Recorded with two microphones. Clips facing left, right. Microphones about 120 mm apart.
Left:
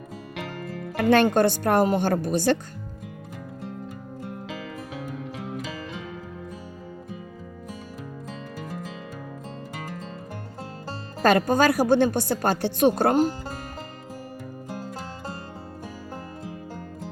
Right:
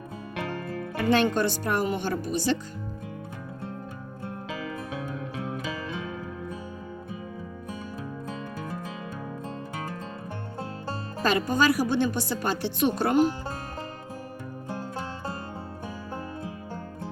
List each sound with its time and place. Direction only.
1.1 s speech: 50° left (ahead or behind)
11.2 s speech: 50° left (ahead or behind)